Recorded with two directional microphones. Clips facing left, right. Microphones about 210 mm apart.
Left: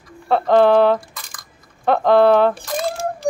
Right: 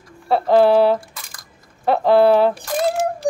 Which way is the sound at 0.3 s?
5° right (ahead or behind).